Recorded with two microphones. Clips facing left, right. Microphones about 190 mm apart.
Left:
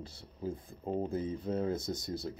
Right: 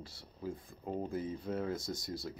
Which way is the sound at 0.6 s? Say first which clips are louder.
Left 5 dB; 25° left (ahead or behind).